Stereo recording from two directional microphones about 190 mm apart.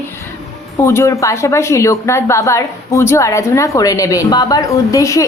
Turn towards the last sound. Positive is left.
turn(degrees=15)  # may be behind; listen again after turning